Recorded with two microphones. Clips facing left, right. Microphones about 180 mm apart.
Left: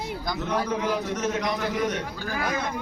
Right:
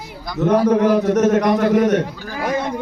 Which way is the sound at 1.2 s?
50° right (ahead or behind).